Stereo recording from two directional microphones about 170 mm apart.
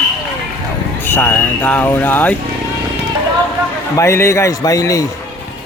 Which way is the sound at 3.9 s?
15° left (ahead or behind).